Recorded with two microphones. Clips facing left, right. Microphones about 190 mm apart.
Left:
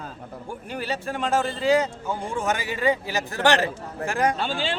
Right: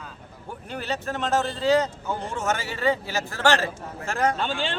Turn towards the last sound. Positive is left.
turn(degrees=15)  # may be behind; listen again after turning